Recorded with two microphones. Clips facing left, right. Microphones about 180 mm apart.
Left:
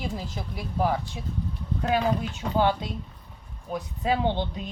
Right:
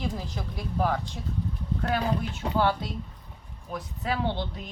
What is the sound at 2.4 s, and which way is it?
Speech, 30° right (ahead or behind).